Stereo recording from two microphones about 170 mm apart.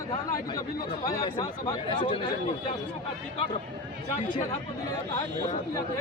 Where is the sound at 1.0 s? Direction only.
20° left (ahead or behind).